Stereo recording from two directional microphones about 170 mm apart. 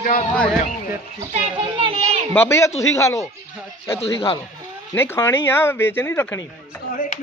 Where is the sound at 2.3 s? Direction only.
15° left (ahead or behind).